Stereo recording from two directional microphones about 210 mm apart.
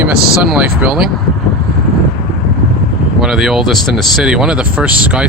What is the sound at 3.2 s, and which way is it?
Speech, centre (ahead or behind).